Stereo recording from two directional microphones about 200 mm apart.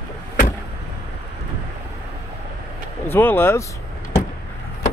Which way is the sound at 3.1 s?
10° left (ahead or behind).